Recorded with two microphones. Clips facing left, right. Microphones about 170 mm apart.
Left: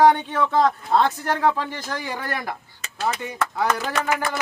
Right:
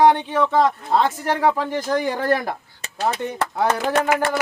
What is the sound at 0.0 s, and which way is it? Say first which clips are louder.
Speech: right 1 dB; centre (ahead or behind).